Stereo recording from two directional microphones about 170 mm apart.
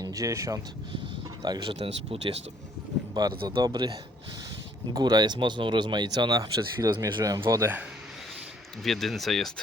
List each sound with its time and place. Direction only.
0.0 s speech: 20° right (ahead or behind)
3.2 s speech: 25° right (ahead or behind)
4.9 s speech: 25° right (ahead or behind)
8.8 s speech: centre (ahead or behind)